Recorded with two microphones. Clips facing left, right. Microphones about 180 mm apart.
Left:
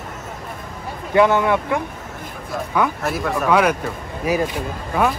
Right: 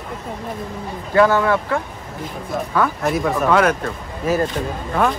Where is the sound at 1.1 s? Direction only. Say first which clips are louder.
Even; 20° left (ahead or behind).